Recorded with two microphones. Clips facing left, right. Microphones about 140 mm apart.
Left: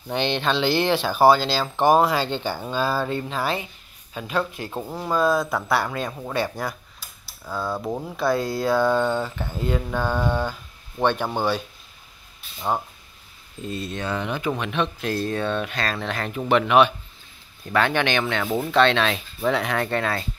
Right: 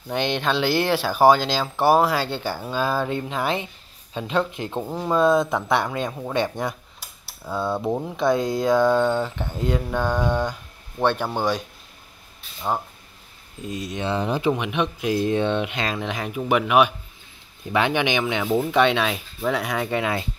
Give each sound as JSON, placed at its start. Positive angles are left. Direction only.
{"t": 0.1, "sound": "speech", "side_deg": -10}
{"t": 7.4, "sound": "speech", "side_deg": 0}
{"t": 7.9, "sound": "speech", "side_deg": -15}
{"t": 13.6, "sound": "speech", "side_deg": -10}
{"t": 14.0, "sound": "speech", "side_deg": -30}
{"t": 14.5, "sound": "speech", "side_deg": -15}